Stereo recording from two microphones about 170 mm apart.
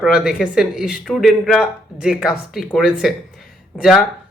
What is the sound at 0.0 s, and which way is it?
Speech, 5° right (ahead or behind).